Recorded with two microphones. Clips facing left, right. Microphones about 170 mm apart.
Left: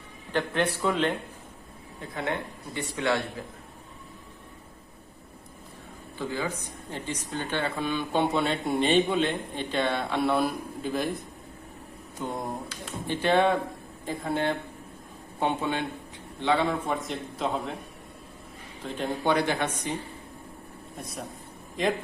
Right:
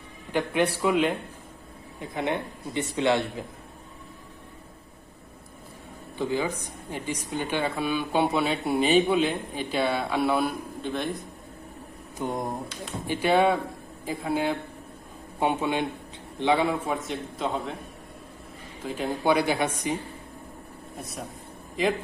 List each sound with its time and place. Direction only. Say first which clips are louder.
0.3 s a man's voice: right 2 dB; 10° right (ahead or behind)
6.1 s speech: right 4 dB; 15° right (ahead or behind); by 11.1 s centre (ahead or behind)
12.2 s a man's voice: right 3 dB; 15° right (ahead or behind)
18.8 s speech: right 1 dB; 5° right (ahead or behind)
21.0 s a man's voice: even; centre (ahead or behind)